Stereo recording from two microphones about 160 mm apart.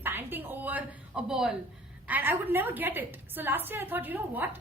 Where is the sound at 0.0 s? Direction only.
15° right (ahead or behind).